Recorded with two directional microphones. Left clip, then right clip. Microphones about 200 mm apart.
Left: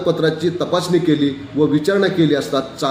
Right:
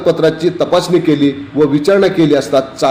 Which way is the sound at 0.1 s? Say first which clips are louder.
Right 6 dB; 15° right (ahead or behind).